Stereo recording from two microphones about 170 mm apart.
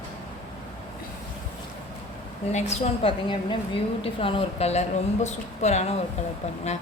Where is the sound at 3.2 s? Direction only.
30° left (ahead or behind).